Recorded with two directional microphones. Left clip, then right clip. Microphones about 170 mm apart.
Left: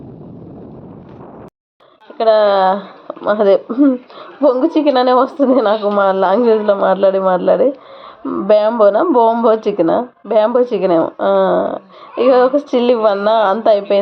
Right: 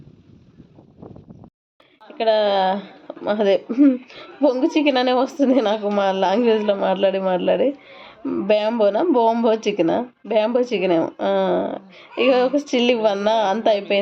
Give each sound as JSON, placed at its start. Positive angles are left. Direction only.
{"t": 2.1, "sound": "speech", "side_deg": -10}